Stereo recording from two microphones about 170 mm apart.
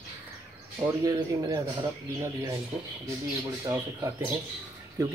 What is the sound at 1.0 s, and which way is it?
Speech, 20° right (ahead or behind).